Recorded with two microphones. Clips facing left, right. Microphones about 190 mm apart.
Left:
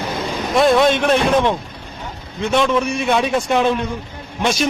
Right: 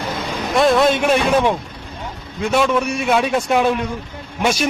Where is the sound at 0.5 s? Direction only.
Centre (ahead or behind).